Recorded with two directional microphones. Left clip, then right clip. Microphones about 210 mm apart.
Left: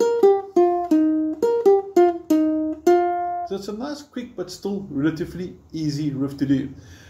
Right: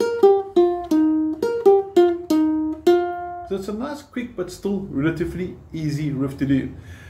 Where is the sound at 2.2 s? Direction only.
25° left (ahead or behind).